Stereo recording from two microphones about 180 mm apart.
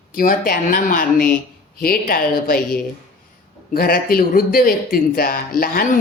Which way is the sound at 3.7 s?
55° left (ahead or behind).